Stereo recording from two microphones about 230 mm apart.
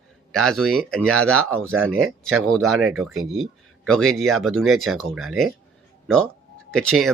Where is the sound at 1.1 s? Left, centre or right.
Right.